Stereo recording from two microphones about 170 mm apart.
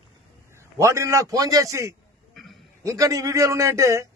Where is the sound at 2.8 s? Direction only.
20° right (ahead or behind).